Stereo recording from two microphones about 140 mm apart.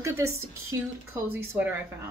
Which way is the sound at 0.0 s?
20° right (ahead or behind).